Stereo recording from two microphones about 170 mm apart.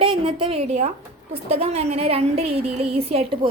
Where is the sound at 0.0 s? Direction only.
30° right (ahead or behind).